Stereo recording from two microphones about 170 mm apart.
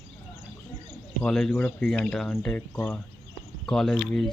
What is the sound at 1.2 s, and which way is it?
Speech, 5° left (ahead or behind).